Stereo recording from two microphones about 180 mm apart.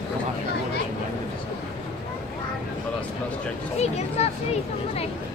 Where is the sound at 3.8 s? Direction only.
35° left (ahead or behind).